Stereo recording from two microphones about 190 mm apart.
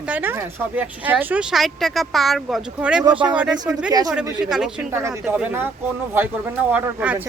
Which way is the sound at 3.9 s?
20° right (ahead or behind).